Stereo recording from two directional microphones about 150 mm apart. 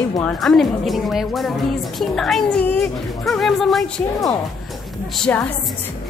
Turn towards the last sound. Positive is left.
turn(degrees=5)  # may be behind; listen again after turning